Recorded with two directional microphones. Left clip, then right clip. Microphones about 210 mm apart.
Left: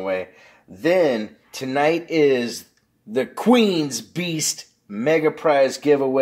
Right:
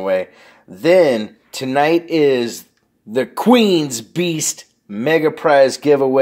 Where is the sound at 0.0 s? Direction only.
40° right (ahead or behind).